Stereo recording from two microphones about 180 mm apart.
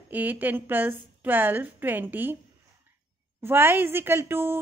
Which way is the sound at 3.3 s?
10° right (ahead or behind).